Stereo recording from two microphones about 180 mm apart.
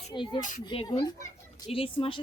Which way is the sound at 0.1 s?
25° left (ahead or behind).